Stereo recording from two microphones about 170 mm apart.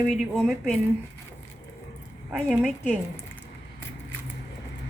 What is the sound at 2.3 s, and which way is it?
Speech, 10° right (ahead or behind).